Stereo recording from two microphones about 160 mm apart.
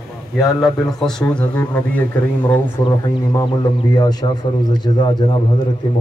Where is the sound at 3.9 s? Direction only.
25° left (ahead or behind).